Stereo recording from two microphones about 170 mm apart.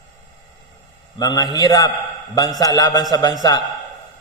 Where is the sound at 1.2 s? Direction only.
20° left (ahead or behind).